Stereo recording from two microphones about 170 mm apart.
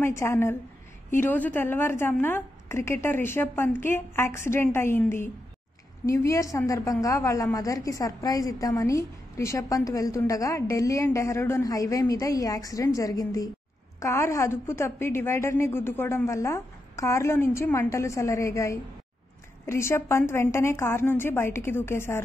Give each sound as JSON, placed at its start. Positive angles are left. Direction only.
{"t": 0.0, "sound": "a woman's voice", "side_deg": 15}